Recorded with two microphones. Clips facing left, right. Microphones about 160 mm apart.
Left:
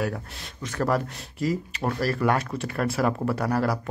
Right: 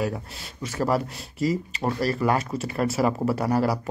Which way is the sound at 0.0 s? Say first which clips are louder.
Right 1 dB; 5° right (ahead or behind).